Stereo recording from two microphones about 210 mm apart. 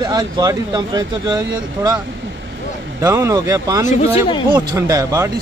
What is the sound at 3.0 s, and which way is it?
Speech, 15° right (ahead or behind).